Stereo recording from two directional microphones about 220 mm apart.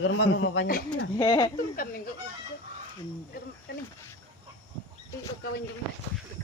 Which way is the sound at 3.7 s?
50° left (ahead or behind).